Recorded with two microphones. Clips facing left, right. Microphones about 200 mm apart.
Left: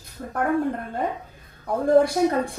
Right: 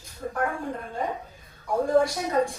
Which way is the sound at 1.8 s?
60° left (ahead or behind).